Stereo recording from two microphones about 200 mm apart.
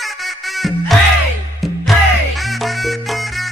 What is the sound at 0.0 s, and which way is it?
Music, centre (ahead or behind).